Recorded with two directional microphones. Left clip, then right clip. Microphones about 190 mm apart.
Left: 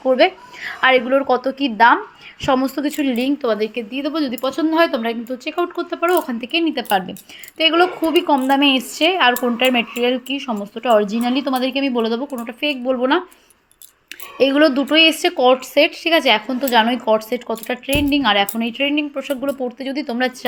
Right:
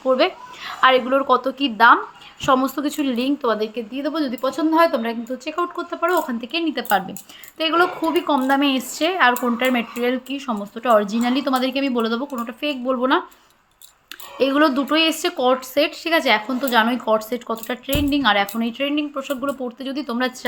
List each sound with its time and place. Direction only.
0.0 s a woman's voice: 10° left (ahead or behind)
14.3 s a woman's voice: 15° left (ahead or behind)